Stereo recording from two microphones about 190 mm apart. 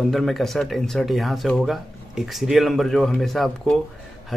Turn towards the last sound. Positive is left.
turn(degrees=0)  # may be behind; listen again after turning